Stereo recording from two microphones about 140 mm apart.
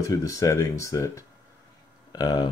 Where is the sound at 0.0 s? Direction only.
25° left (ahead or behind).